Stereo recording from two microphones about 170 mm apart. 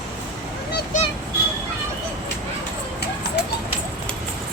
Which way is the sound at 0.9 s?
45° left (ahead or behind).